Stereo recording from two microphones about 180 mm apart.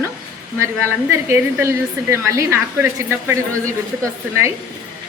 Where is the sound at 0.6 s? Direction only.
15° right (ahead or behind).